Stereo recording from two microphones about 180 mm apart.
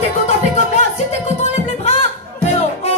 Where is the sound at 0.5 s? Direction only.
40° left (ahead or behind).